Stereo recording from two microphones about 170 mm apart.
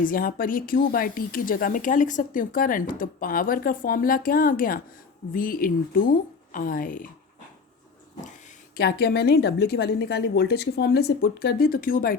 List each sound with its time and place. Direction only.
0.0 s speech: 55° left (ahead or behind)
8.7 s a woman's voice: 65° left (ahead or behind)